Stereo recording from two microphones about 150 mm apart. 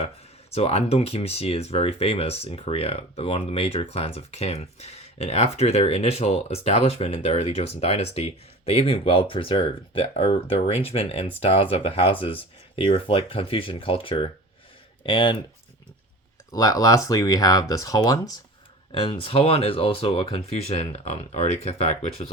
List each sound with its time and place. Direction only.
0.5 s speech: 45° left (ahead or behind)
16.5 s speech: 25° left (ahead or behind)
18.9 s speech: 35° left (ahead or behind)